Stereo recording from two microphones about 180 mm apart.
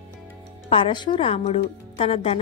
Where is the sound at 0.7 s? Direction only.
30° left (ahead or behind).